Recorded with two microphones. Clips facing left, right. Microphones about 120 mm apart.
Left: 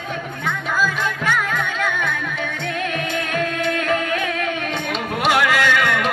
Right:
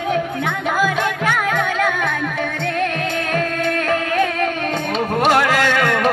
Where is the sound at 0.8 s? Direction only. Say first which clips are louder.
Right 4 dB; 55° right (ahead or behind).